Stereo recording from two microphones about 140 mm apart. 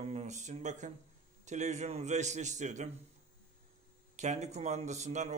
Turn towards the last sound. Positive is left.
turn(degrees=-55)  # may be behind; listen again after turning